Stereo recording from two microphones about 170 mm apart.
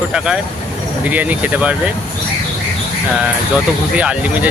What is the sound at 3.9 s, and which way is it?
Speech, 10° right (ahead or behind).